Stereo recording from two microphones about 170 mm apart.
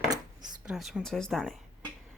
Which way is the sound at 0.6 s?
5° right (ahead or behind).